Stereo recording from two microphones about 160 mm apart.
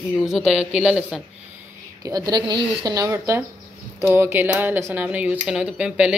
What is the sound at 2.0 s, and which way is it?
Speech, 25° right (ahead or behind).